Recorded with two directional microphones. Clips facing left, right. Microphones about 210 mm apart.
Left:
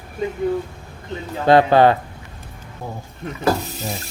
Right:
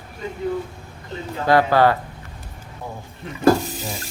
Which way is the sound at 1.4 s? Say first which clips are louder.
Left 3 dB; 20° left (ahead or behind).